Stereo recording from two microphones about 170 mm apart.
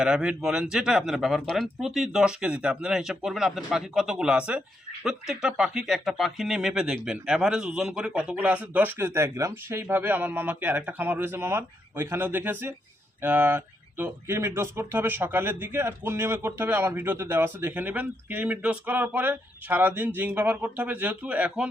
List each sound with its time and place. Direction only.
0.0 s speech: 5° right (ahead or behind)